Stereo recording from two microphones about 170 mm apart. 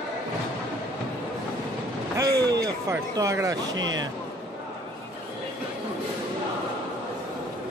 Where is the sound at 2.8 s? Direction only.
20° right (ahead or behind).